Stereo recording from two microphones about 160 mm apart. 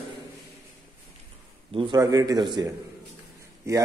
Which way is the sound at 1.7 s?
30° right (ahead or behind).